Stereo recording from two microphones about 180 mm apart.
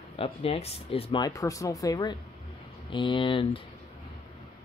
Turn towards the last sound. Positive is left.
turn(degrees=30)  # may be behind; listen again after turning